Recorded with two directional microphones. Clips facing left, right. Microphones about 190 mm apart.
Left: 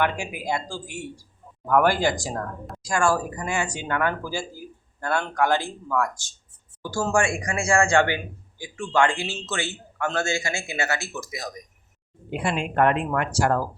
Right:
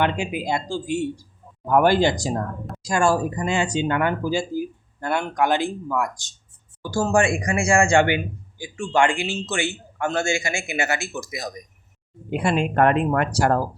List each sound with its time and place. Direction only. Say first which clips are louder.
0.0 s speech: right 3 dB; 20° right (ahead or behind)
12.3 s speech: right 5 dB; 45° right (ahead or behind)